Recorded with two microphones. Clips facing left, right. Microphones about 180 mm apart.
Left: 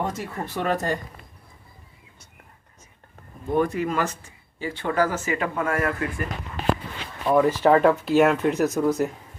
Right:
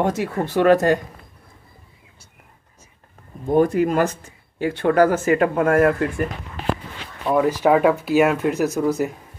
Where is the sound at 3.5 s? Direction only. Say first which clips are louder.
Right 6 dB; 45° right (ahead or behind).